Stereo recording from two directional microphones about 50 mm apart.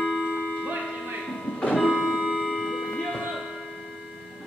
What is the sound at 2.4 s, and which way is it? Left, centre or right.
Music, centre.